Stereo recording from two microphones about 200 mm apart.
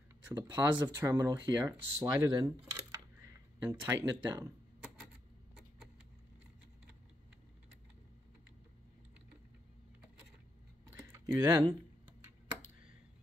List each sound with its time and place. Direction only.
0.2 s speech: 10° right (ahead or behind)
10.9 s typing: 15° right (ahead or behind)